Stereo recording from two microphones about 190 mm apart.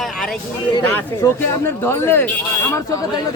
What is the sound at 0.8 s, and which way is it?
Speech, 15° left (ahead or behind).